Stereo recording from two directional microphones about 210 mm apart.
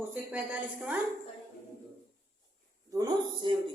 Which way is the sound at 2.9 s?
20° right (ahead or behind).